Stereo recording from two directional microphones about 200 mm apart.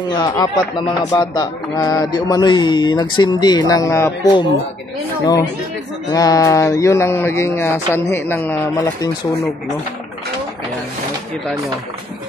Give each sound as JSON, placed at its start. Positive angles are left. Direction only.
{"t": 0.2, "sound": "speech", "side_deg": 20}